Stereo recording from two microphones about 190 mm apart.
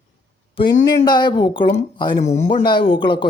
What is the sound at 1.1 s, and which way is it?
Speech, 25° left (ahead or behind).